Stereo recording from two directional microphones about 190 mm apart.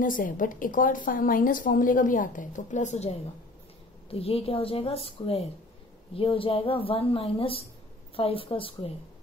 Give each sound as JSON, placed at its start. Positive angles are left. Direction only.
{"t": 0.0, "sound": "a woman's voice", "side_deg": 45}